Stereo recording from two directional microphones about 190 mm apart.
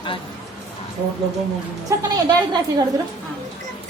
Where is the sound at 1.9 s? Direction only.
15° right (ahead or behind).